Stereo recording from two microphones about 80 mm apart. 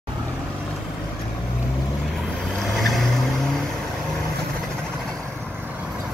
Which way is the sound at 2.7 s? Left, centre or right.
Centre.